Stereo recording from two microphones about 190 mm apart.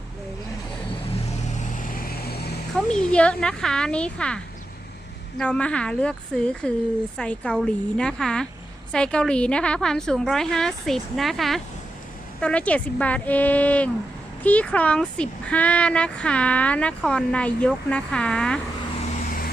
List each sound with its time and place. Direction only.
1.2 s vehicle: 35° left (ahead or behind); by 2.5 s 55° left (ahead or behind)
2.7 s speech: 5° left (ahead or behind)
5.4 s speech: 5° left (ahead or behind)
19.1 s vehicle: 45° left (ahead or behind)